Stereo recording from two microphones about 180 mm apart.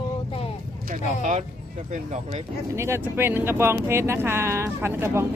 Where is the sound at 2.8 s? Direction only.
15° right (ahead or behind).